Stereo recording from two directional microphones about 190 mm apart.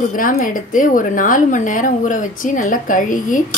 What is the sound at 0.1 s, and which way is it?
Speech, 45° left (ahead or behind).